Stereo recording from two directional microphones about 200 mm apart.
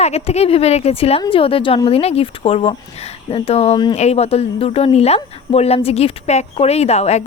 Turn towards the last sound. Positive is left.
turn(degrees=30)  # may be behind; listen again after turning